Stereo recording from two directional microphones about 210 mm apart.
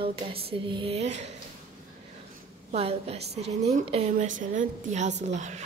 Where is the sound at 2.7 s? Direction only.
30° right (ahead or behind).